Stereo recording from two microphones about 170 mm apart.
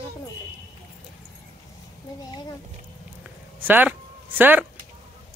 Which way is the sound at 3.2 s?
10° right (ahead or behind).